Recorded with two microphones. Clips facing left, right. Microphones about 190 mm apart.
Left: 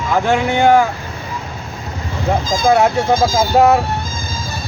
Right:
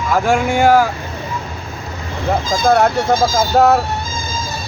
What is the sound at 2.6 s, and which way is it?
Speech, centre (ahead or behind).